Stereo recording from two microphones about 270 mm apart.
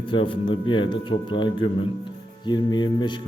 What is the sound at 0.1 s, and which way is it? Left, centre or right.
A man's voice, centre.